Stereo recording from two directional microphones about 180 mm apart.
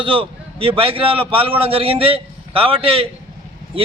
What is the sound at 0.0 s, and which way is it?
A man's voice, 30° right (ahead or behind).